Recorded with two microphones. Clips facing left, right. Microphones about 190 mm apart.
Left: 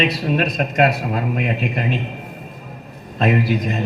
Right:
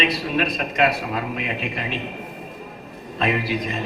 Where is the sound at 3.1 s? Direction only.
45° left (ahead or behind).